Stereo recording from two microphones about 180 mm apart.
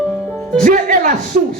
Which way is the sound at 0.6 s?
45° right (ahead or behind).